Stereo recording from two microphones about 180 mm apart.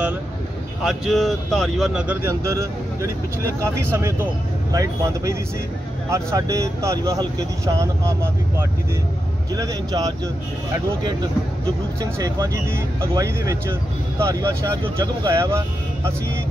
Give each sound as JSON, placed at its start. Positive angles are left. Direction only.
{"t": 0.8, "sound": "speech", "side_deg": 0}
{"t": 12.0, "sound": "speech", "side_deg": -20}